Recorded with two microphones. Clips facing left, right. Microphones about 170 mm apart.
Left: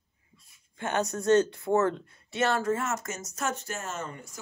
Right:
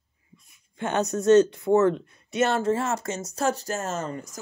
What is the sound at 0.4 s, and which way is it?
Speech, 20° right (ahead or behind).